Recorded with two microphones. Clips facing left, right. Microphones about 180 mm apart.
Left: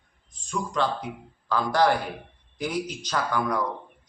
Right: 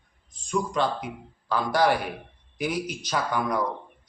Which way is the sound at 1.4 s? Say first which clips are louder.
Even; 10° right (ahead or behind).